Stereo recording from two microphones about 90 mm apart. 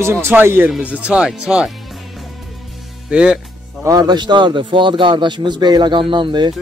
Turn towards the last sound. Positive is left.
turn(degrees=-60)  # may be behind; listen again after turning